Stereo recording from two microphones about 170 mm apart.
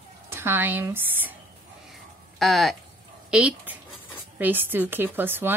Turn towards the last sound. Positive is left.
turn(degrees=-10)  # may be behind; listen again after turning